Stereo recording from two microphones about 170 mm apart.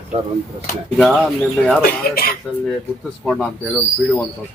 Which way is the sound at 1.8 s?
60° left (ahead or behind).